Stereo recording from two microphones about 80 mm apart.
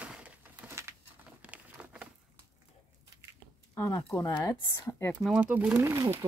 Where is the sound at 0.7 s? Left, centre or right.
Right.